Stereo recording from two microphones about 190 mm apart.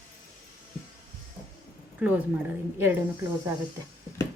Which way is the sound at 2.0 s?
10° right (ahead or behind).